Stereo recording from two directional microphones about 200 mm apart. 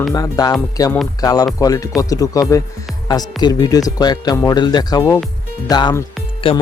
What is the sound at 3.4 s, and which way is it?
Speech, 20° left (ahead or behind).